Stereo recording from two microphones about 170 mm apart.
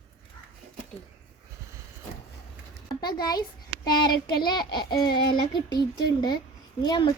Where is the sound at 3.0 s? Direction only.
25° left (ahead or behind).